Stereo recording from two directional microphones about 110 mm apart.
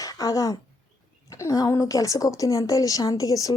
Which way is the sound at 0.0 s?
30° left (ahead or behind).